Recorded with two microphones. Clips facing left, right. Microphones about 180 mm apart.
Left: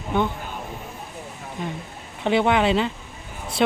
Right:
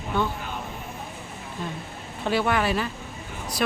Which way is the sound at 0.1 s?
20° left (ahead or behind).